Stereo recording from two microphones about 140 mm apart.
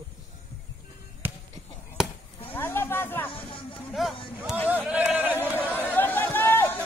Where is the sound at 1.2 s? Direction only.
15° right (ahead or behind).